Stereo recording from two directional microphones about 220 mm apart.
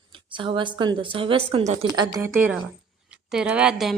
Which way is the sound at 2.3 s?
5° right (ahead or behind).